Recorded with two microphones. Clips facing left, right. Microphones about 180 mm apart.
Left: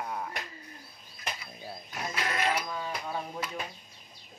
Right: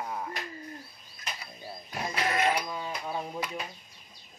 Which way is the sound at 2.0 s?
20° right (ahead or behind).